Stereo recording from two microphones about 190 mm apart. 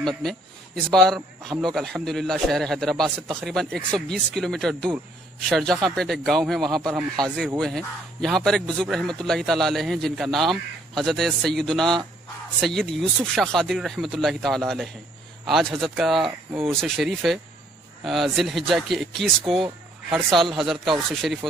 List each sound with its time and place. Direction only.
0.0 s a man's voice: centre (ahead or behind)